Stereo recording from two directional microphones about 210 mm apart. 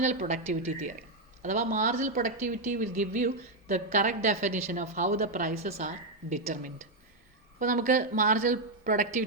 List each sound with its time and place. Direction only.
0.0 s a woman's voice: 35° right (ahead or behind)